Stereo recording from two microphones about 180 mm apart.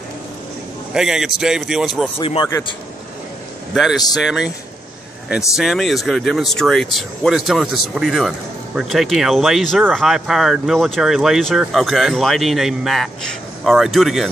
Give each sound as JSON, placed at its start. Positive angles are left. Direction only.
{"t": 0.9, "sound": "speech", "side_deg": -5}
{"t": 2.1, "sound": "speech", "side_deg": 30}
{"t": 3.7, "sound": "speech", "side_deg": 0}
{"t": 5.6, "sound": "speech", "side_deg": 0}